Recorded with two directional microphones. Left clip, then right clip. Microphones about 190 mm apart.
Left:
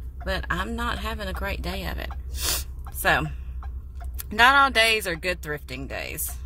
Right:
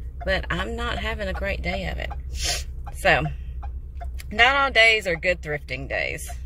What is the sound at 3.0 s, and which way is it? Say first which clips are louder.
Speech: right 2 dB; 15° left (ahead or behind).